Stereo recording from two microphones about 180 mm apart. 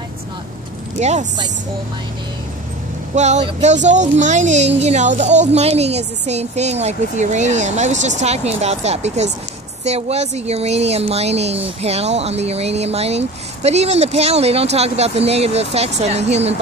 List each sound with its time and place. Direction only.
0.9 s speech: 40° right (ahead or behind)
3.2 s speech: 40° right (ahead or behind)